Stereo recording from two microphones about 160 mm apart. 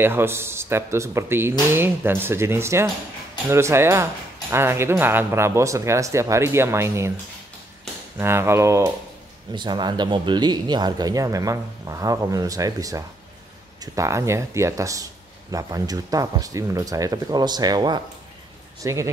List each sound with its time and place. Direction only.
0.0 s speech: 15° right (ahead or behind)
8.2 s speech: 15° right (ahead or behind)
9.5 s speech: 30° right (ahead or behind)